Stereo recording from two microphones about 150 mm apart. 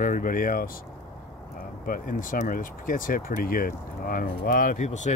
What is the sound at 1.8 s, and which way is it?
Speech, 70° left (ahead or behind).